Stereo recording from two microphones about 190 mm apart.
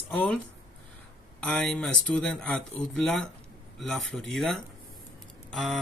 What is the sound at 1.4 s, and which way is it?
Speech, 5° left (ahead or behind).